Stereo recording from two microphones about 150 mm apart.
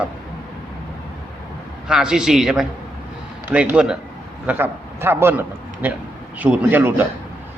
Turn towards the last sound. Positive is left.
turn(degrees=-10)  # may be behind; listen again after turning